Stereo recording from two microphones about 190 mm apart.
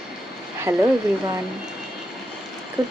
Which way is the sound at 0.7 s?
15° right (ahead or behind).